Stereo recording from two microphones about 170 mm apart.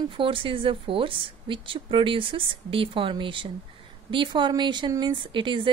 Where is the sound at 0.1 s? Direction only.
30° right (ahead or behind).